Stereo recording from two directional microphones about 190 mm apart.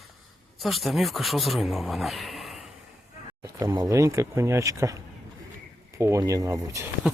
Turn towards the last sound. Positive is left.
turn(degrees=-15)  # may be behind; listen again after turning